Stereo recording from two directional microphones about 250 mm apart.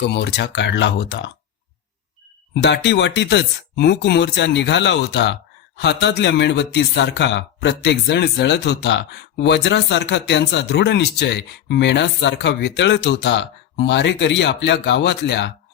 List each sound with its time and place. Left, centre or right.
0.1 s a man's voice: left
2.5 s a man's voice: left